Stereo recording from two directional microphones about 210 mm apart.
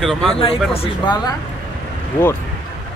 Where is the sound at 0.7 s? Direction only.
25° left (ahead or behind).